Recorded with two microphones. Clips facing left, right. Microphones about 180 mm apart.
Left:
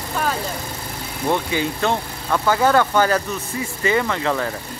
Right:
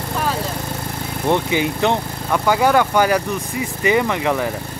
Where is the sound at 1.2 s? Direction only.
20° right (ahead or behind).